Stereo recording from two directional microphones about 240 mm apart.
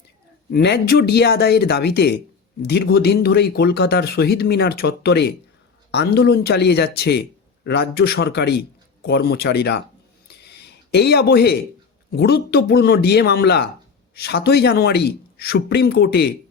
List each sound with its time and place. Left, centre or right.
0.5 s speech: left
10.2 s a sound: left
12.1 s speech: left